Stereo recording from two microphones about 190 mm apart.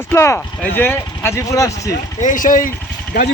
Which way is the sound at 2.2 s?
45° left (ahead or behind).